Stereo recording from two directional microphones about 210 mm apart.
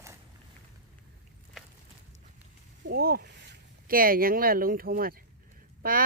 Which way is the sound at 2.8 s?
45° right (ahead or behind).